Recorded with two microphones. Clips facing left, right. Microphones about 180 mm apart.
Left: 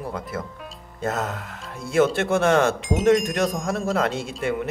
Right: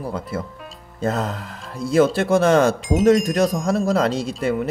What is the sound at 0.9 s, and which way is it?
Speech, 30° right (ahead or behind).